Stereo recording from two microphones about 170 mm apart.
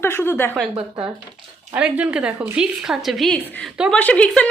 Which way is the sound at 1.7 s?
10° right (ahead or behind).